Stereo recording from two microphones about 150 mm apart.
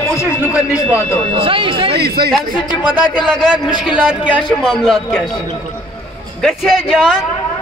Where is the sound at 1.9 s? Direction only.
90° right.